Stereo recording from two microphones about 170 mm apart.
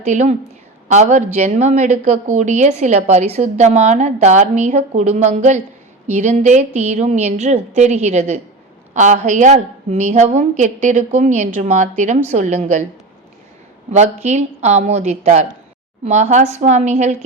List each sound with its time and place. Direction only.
0.0 s a woman's voice: 45° right (ahead or behind)
13.9 s a woman's voice: 45° right (ahead or behind)